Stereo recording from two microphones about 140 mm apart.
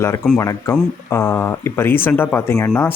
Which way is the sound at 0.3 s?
20° left (ahead or behind).